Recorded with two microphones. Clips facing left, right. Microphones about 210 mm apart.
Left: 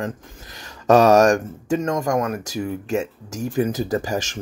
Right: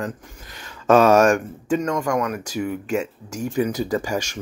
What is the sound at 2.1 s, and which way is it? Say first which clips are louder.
Speech: left 1 dB; 30° left (ahead or behind).